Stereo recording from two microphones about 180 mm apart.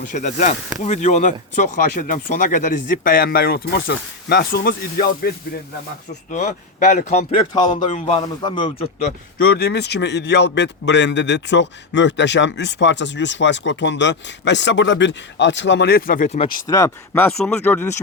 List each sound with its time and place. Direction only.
0.0 s speech: 45° left (ahead or behind)
6.3 s speech: 45° left (ahead or behind)
9.4 s a man's voice: 60° left (ahead or behind)
16.4 s speech: 20° left (ahead or behind)